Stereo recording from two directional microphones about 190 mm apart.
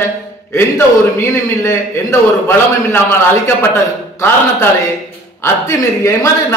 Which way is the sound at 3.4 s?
15° left (ahead or behind).